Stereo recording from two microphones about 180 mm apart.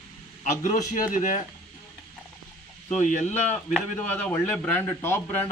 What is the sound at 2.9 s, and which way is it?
Speech, 40° left (ahead or behind).